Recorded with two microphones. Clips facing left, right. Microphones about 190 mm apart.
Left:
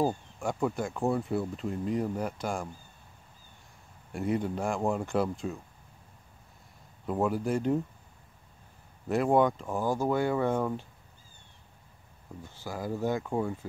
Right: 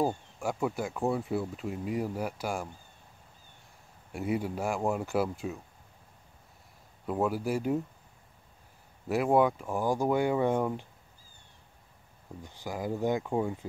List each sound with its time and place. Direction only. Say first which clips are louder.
0.0 s speech: left 1 dB; centre (ahead or behind)
4.1 s speech: left 1 dB; 5° right (ahead or behind)
7.1 s speech: left 1 dB; 5° right (ahead or behind)
9.1 s speech: even; 5° right (ahead or behind)
12.4 s speech: right 1 dB; 15° right (ahead or behind)